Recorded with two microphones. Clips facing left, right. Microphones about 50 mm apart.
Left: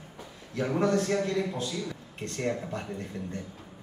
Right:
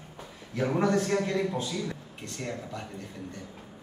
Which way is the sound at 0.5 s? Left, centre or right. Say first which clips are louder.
Even; centre.